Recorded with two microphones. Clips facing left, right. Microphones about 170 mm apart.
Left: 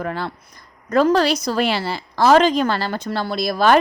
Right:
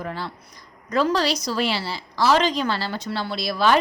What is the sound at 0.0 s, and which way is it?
A woman's voice, 60° left (ahead or behind).